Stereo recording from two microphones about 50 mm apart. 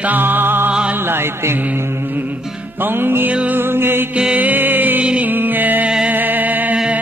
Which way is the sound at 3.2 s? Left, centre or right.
Right.